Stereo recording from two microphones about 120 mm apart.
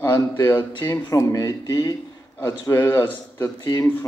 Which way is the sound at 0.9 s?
25° left (ahead or behind).